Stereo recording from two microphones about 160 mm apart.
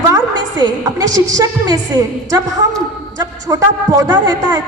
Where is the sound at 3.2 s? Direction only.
20° right (ahead or behind).